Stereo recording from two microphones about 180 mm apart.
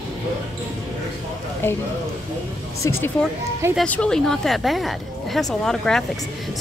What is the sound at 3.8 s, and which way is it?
Speech, 5° left (ahead or behind).